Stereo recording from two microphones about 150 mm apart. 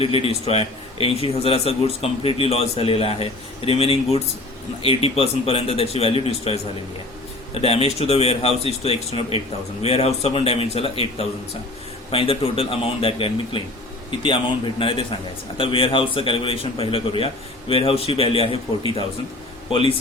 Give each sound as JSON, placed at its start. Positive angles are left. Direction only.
{"t": 0.0, "sound": "a man's voice", "side_deg": 40}
{"t": 7.6, "sound": "a man's voice", "side_deg": 40}